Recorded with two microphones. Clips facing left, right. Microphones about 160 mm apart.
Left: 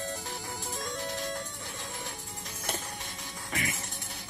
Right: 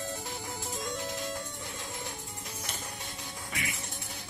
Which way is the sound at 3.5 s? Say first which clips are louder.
Left 4 dB; 45° left (ahead or behind).